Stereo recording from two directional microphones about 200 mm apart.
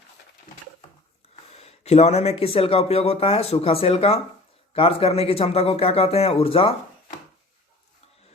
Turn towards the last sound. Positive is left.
turn(degrees=30)  # may be behind; listen again after turning